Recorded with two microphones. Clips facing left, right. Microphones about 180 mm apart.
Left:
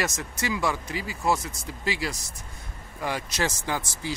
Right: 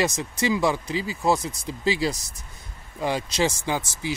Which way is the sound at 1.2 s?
30° right (ahead or behind).